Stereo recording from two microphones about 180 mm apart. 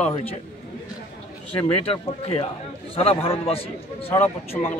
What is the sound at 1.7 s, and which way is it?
A man's voice, 35° left (ahead or behind).